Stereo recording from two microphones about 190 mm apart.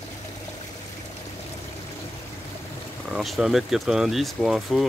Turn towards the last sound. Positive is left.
turn(degrees=0)  # may be behind; listen again after turning